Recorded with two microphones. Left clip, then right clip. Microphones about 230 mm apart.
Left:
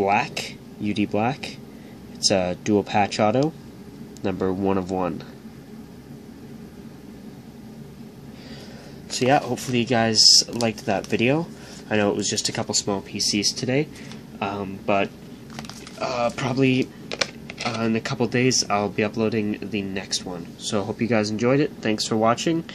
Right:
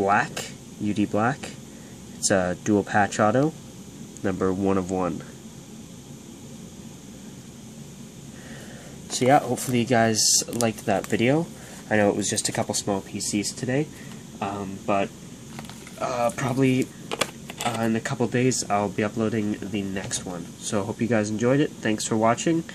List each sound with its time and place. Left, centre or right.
0.1 s speech: centre
9.1 s speech: centre
16.8 s computer keyboard: right
17.6 s speech: centre